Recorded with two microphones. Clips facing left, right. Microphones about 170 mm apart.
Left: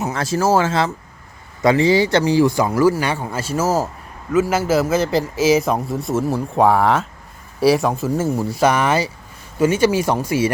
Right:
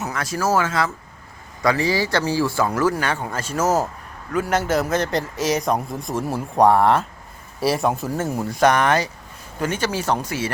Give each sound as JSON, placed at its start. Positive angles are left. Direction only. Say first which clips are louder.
{"t": 0.0, "sound": "a man's voice", "louder": "left 5 dB", "side_deg": 30}